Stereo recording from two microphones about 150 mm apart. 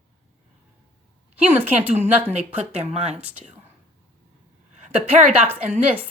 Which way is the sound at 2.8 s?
45° right (ahead or behind).